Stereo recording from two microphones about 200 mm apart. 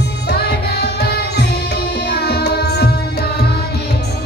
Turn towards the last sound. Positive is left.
turn(degrees=55)  # may be behind; listen again after turning